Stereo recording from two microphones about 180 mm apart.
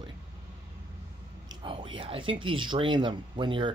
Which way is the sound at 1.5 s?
30° right (ahead or behind).